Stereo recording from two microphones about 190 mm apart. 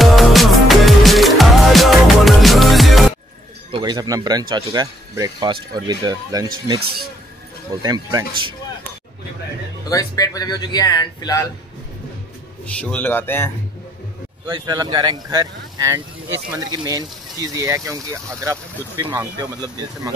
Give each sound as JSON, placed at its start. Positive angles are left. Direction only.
{"t": 0.0, "sound": "music", "side_deg": 0}
{"t": 3.7, "sound": "speech", "side_deg": -20}
{"t": 7.8, "sound": "speech", "side_deg": -20}
{"t": 9.8, "sound": "speech", "side_deg": 20}
{"t": 12.6, "sound": "a man's voice", "side_deg": 5}
{"t": 14.5, "sound": "speech", "side_deg": -20}